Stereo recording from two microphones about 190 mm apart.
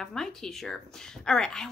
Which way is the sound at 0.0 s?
Centre (ahead or behind).